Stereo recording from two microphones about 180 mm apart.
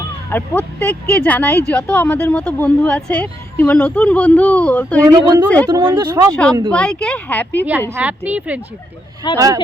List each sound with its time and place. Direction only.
0.3 s speech: 10° left (ahead or behind)
4.9 s a woman's voice: 15° right (ahead or behind)
6.7 s speech: 5° left (ahead or behind)
7.7 s a woman's voice: 15° right (ahead or behind)